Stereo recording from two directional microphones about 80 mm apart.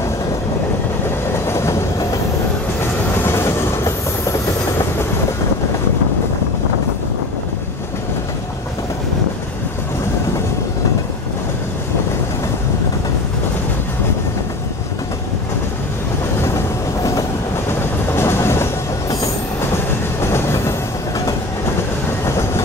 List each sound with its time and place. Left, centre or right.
1.3 s train: left
2.8 s train: left
17.6 s train: left
20.2 s train: left
22.2 s train: left